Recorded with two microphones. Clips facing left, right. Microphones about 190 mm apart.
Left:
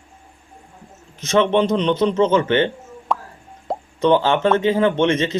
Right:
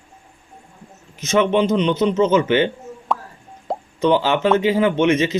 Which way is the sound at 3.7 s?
5° right (ahead or behind).